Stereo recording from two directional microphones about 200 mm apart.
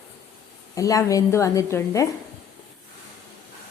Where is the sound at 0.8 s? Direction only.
15° left (ahead or behind).